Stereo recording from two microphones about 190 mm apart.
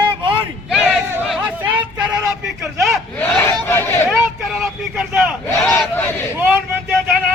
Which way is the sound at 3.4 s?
10° left (ahead or behind).